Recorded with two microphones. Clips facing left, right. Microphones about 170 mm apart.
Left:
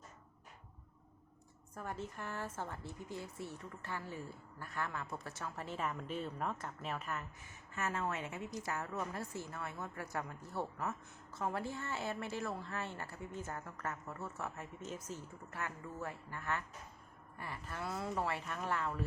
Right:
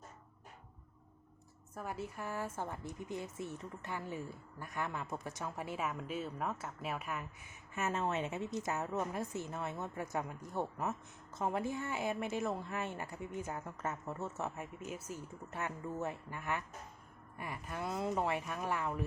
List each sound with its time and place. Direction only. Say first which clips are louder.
1.7 s speech: right 2 dB; 10° right (ahead or behind)
15.4 s speech: right 4 dB; 20° right (ahead or behind)